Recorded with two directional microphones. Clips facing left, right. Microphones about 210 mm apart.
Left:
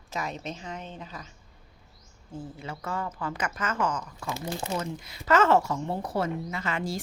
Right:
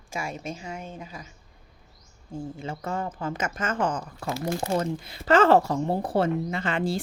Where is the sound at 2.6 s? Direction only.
25° right (ahead or behind).